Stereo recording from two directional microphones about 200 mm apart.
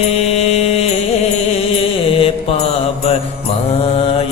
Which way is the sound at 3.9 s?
25° left (ahead or behind).